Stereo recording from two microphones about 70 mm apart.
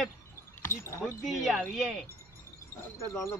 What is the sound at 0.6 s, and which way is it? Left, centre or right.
Speech, left.